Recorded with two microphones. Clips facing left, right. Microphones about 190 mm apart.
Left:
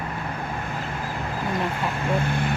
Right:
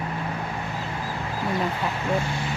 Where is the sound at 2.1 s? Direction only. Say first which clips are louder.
Left 2 dB; 55° left (ahead or behind).